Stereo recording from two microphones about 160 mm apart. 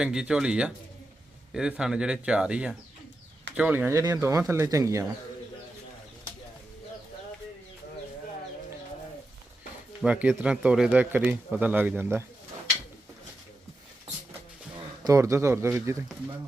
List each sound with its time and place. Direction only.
0.0 s speech: 5° right (ahead or behind)
10.0 s speech: 10° right (ahead or behind)
15.0 s speech: 20° right (ahead or behind)